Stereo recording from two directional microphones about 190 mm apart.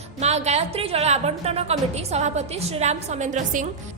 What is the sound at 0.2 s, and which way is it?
A woman's voice, 35° right (ahead or behind).